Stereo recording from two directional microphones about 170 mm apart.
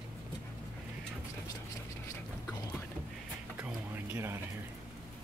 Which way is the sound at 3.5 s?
10° right (ahead or behind).